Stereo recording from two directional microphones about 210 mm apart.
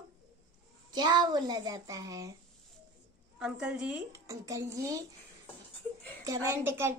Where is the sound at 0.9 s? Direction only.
20° right (ahead or behind).